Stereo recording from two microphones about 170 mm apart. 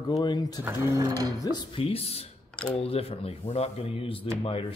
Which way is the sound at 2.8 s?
35° left (ahead or behind).